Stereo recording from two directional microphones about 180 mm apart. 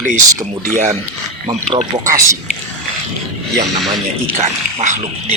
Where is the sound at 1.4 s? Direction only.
30° right (ahead or behind).